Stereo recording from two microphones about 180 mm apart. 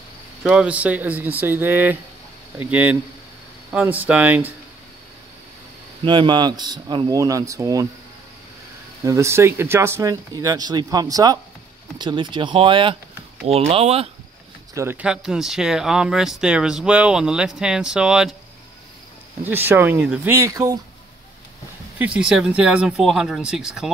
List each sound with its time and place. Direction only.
0.4 s speech: 5° right (ahead or behind)
6.0 s speech: 25° right (ahead or behind)
9.0 s speech: 15° right (ahead or behind); by 14.1 s 35° right (ahead or behind)
14.7 s speech: 15° right (ahead or behind)
19.4 s speech: 10° right (ahead or behind)
21.9 s speech: 5° right (ahead or behind)